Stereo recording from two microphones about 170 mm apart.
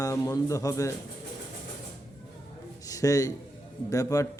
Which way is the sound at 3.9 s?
20° left (ahead or behind).